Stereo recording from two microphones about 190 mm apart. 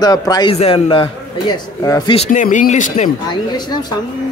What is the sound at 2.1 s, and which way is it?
Speech, 40° left (ahead or behind).